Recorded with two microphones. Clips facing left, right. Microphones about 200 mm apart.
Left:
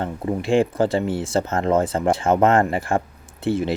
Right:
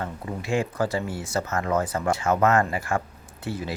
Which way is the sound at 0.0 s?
30° left (ahead or behind).